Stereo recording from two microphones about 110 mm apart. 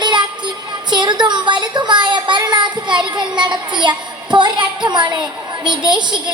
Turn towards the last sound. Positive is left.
turn(degrees=-45)  # may be behind; listen again after turning